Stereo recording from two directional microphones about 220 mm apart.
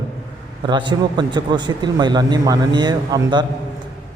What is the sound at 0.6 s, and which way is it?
A man's voice, 20° right (ahead or behind).